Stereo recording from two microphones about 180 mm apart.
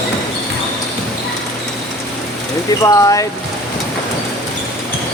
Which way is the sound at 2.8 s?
20° left (ahead or behind).